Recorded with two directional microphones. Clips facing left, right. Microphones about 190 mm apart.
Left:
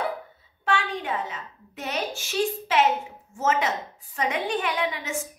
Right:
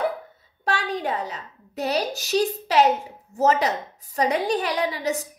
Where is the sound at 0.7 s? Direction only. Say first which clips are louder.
Right 1 dB; 35° right (ahead or behind).